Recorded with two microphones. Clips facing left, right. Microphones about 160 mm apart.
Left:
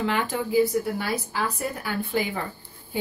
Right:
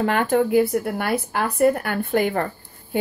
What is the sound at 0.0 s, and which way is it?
Speech, 55° right (ahead or behind).